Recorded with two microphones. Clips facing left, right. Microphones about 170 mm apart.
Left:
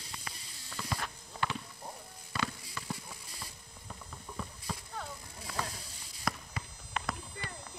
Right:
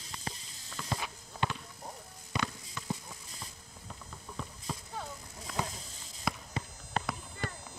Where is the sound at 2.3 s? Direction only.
15° right (ahead or behind).